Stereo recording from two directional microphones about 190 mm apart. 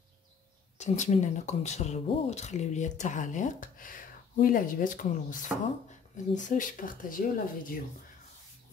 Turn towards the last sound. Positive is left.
turn(degrees=45)  # may be behind; listen again after turning